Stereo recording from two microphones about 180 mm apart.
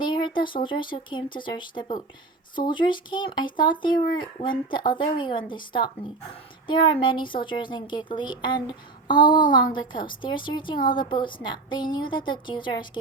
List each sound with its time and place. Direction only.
0.0 s speech: 25° left (ahead or behind)